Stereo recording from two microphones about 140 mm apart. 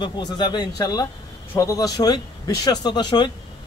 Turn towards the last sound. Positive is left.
turn(degrees=35)  # may be behind; listen again after turning